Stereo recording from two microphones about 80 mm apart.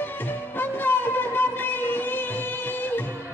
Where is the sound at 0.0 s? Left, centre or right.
Left.